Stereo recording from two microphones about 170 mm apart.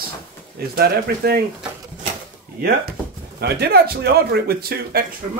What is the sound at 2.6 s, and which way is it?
Speech, 65° right (ahead or behind).